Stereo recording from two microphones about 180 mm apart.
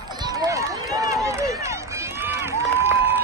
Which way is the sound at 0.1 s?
25° right (ahead or behind).